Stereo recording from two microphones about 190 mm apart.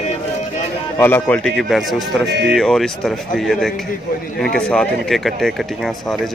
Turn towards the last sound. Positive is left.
turn(degrees=0)  # may be behind; listen again after turning